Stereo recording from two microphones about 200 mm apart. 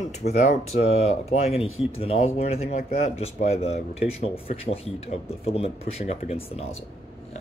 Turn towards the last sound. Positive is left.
turn(degrees=30)  # may be behind; listen again after turning